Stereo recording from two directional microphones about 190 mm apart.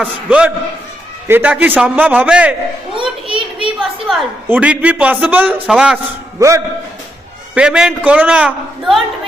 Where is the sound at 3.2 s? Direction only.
25° right (ahead or behind).